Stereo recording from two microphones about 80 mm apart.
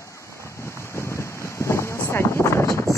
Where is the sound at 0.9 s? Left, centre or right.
Left.